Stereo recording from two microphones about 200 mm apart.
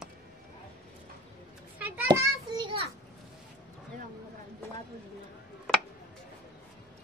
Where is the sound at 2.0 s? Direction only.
15° right (ahead or behind).